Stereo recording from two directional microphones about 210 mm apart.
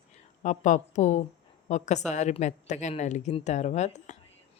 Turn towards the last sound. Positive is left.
turn(degrees=35)  # may be behind; listen again after turning